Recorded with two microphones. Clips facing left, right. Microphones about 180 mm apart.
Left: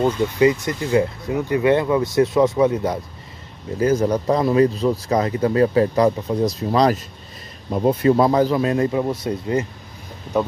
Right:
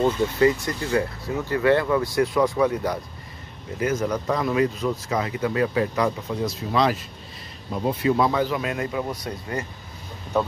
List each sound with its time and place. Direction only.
0.0 s speech: 20° left (ahead or behind)
3.8 s speech: 35° left (ahead or behind)